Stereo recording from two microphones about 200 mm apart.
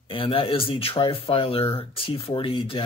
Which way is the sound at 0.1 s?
25° left (ahead or behind).